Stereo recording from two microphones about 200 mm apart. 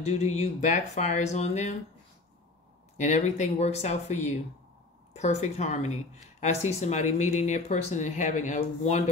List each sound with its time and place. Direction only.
0.0 s speech: 35° left (ahead or behind)
3.0 s speech: 35° left (ahead or behind)